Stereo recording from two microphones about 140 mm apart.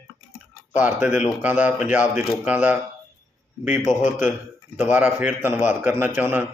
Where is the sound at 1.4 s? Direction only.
10° right (ahead or behind).